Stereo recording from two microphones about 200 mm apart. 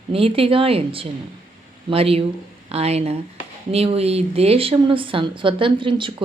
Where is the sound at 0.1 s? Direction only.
30° right (ahead or behind).